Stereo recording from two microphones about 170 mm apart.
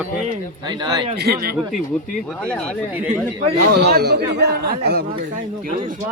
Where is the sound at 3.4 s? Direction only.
50° right (ahead or behind).